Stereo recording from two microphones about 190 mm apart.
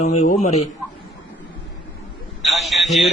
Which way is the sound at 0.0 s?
40° left (ahead or behind).